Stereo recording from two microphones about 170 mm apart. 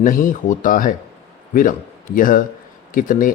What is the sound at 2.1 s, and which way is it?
Speech, 55° left (ahead or behind).